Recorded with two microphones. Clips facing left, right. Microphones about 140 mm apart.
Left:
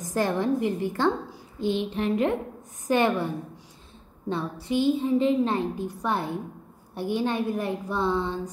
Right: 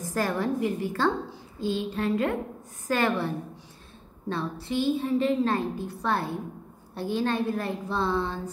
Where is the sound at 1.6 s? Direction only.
20° left (ahead or behind).